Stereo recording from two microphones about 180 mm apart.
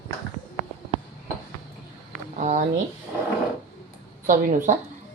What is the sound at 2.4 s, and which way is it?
Speech, 40° right (ahead or behind).